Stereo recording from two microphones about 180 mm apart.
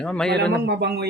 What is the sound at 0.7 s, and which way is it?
Speech, 70° right (ahead or behind).